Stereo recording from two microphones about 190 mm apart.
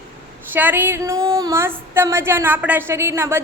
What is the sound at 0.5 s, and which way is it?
A woman's voice, 10° right (ahead or behind).